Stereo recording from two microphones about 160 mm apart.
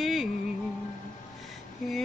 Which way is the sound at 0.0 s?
Centre (ahead or behind).